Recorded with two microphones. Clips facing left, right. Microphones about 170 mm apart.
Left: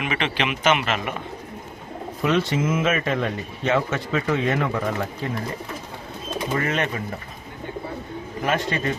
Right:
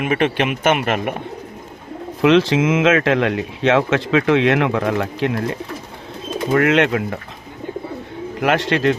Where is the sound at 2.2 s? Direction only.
90° right.